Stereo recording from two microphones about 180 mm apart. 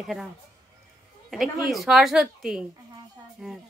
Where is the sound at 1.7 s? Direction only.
Centre (ahead or behind).